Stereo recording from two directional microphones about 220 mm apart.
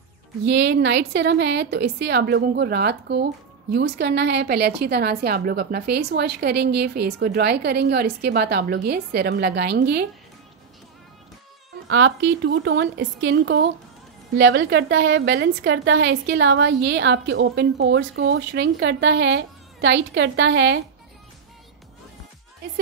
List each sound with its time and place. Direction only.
0.5 s a woman's voice: 50° right (ahead or behind)
11.9 s a woman's voice: 55° right (ahead or behind)